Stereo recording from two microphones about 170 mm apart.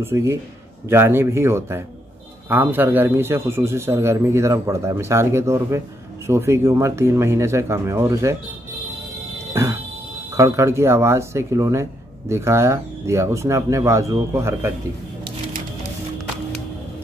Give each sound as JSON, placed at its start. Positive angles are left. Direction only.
{"t": 0.0, "sound": "speech", "side_deg": -15}
{"t": 9.5, "sound": "music", "side_deg": -15}
{"t": 10.3, "sound": "speech", "side_deg": -20}